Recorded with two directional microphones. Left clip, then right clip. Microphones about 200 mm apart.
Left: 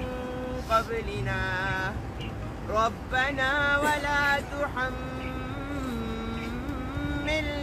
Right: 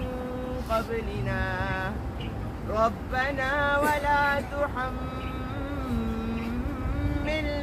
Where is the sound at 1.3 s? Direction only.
15° left (ahead or behind).